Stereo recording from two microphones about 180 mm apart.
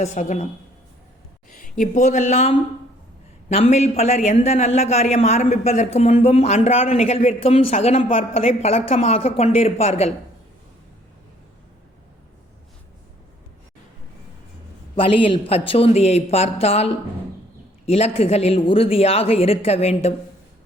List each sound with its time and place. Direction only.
0.0 s speech: 45° left (ahead or behind)
1.5 s a man's voice: 50° left (ahead or behind)
14.9 s a man's voice: 30° left (ahead or behind)